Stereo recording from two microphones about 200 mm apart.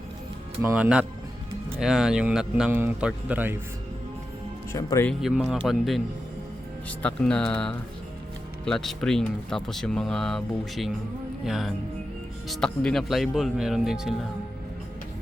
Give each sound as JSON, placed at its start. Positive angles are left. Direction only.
{"t": 0.6, "sound": "speech", "side_deg": -10}
{"t": 4.7, "sound": "speech", "side_deg": 15}
{"t": 5.0, "sound": "speech", "side_deg": 0}
{"t": 7.0, "sound": "speech", "side_deg": 5}